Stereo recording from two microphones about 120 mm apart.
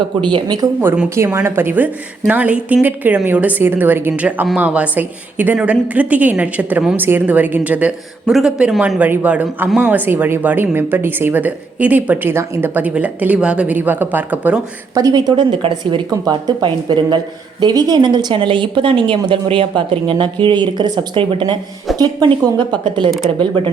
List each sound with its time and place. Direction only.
0.2 s speech: 40° right (ahead or behind)
0.8 s speech: 20° right (ahead or behind)
14.9 s speech: 35° right (ahead or behind)
16.0 s speech: 30° right (ahead or behind)